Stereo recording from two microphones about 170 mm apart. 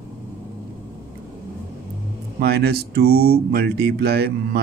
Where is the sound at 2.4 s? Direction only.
70° right (ahead or behind).